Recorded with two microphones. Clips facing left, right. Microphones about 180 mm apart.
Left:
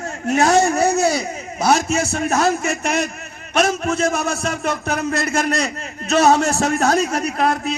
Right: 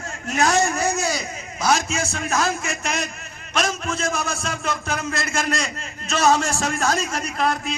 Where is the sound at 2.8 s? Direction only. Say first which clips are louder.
Left 6 dB; 60° left (ahead or behind).